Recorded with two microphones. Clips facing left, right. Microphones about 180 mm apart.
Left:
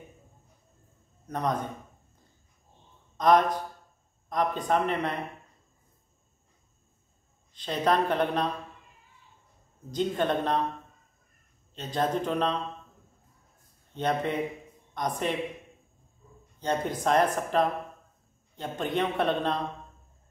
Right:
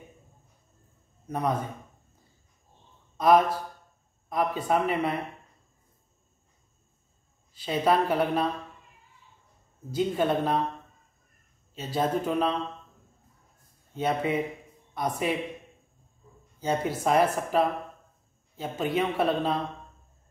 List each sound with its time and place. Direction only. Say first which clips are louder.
1.2 s speech: right 1 dB; 5° right (ahead or behind)
3.2 s speech: right 1 dB; 5° right (ahead or behind)
7.5 s speech: right 2 dB; 5° right (ahead or behind)
9.8 s speech: right 2 dB; 5° right (ahead or behind)
11.7 s a man's voice: right 1 dB; 5° right (ahead or behind)
13.9 s speech: right 1 dB; 5° right (ahead or behind)
16.5 s a man's voice: right 1 dB; 5° right (ahead or behind)